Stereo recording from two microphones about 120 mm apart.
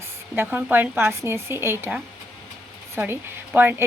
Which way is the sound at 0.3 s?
15° right (ahead or behind).